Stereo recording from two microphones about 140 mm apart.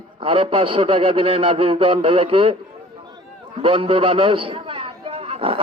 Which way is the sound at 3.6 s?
40° right (ahead or behind).